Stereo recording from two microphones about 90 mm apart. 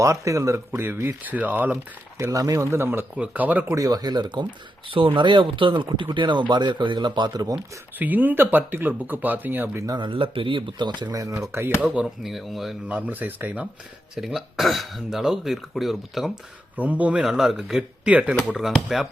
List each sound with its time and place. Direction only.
0.0 s speech: 35° right (ahead or behind); by 1.7 s 20° right (ahead or behind)
2.1 s speech: 35° right (ahead or behind); by 3.7 s 20° right (ahead or behind)
3.7 s speech: 45° right (ahead or behind)
4.9 s speech: 80° right; by 7.4 s 55° right (ahead or behind)
7.9 s speech: 20° right (ahead or behind)
10.0 s speech: 75° right (ahead or behind); by 11.4 s 35° right (ahead or behind)
12.0 s speech: centre (ahead or behind)
12.9 s speech: 15° right (ahead or behind)
14.2 s speech: 5° right (ahead or behind)
16.7 s speech: 15° right (ahead or behind)
17.2 s speech: 5° right (ahead or behind)